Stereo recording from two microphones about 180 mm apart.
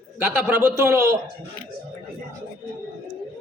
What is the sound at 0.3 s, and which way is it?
Speech, 10° right (ahead or behind).